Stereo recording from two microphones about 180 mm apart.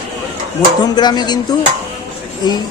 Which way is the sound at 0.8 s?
25° left (ahead or behind).